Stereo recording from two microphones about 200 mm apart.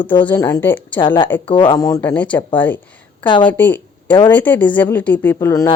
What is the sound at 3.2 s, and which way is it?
Speech, 25° left (ahead or behind).